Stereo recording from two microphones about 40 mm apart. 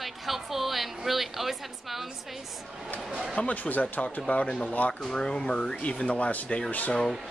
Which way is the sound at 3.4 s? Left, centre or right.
Left.